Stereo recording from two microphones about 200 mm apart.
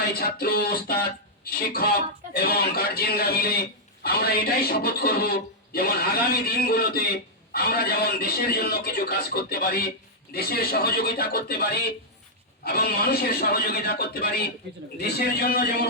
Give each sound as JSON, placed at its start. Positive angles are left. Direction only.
{"t": 0.2, "sound": "speech", "side_deg": 50}